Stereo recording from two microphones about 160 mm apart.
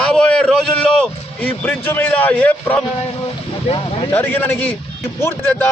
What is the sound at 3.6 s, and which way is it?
Speech, 35° left (ahead or behind).